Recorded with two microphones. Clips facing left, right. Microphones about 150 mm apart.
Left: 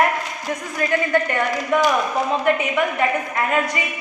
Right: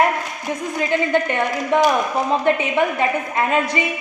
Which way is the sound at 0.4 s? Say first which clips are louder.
Right 2 dB; 20° right (ahead or behind).